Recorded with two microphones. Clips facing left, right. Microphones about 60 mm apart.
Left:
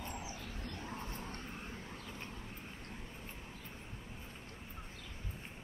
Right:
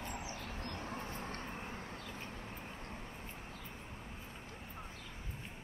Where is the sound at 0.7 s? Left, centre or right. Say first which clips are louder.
Right 1 dB; right.